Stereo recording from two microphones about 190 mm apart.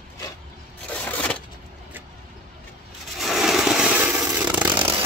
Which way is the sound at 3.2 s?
Centre (ahead or behind).